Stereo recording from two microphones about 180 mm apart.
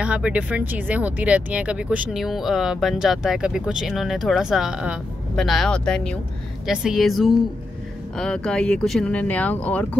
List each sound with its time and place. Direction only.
0.0 s speech: 5° right (ahead or behind); by 9.8 s 10° left (ahead or behind)